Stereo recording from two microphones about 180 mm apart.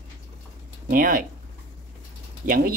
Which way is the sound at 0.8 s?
50° right (ahead or behind).